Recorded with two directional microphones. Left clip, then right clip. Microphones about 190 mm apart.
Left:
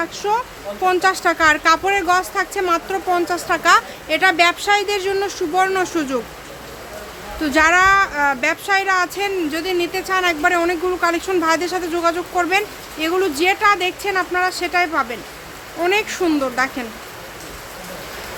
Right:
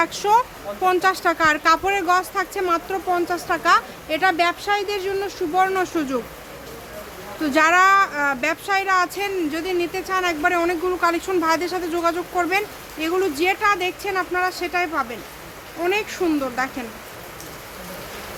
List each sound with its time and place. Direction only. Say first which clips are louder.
0.0 s speech: right 3 dB; 20° right (ahead or behind)
0.8 s speech: left 2 dB; 5° right (ahead or behind)
7.4 s speech: left 2 dB; 5° right (ahead or behind); by 16.8 s 15° left (ahead or behind)